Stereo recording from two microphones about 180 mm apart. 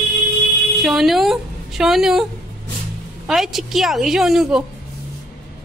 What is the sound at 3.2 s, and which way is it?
A woman's voice, centre (ahead or behind).